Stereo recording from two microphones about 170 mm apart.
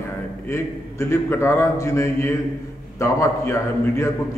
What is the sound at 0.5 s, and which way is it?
A man's voice, 15° left (ahead or behind).